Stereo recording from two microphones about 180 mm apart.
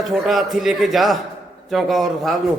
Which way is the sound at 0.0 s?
Centre (ahead or behind).